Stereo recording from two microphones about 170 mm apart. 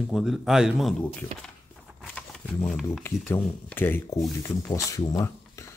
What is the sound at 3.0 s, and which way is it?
Speech, 10° left (ahead or behind).